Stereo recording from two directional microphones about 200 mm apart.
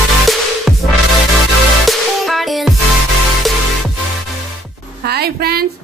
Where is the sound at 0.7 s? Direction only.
Centre (ahead or behind).